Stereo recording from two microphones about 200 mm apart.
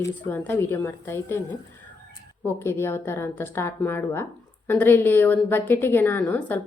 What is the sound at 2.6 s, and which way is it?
Speech, 10° left (ahead or behind).